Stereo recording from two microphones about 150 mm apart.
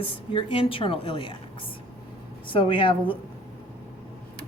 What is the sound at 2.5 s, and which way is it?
Speech, 35° left (ahead or behind).